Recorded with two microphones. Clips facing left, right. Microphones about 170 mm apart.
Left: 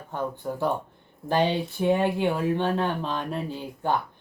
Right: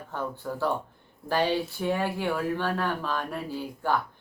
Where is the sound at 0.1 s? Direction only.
20° left (ahead or behind).